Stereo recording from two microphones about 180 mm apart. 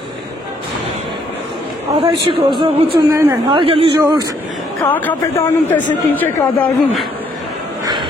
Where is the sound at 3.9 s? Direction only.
20° right (ahead or behind).